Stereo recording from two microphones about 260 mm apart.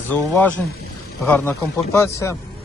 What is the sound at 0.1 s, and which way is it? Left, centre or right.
Speech, centre.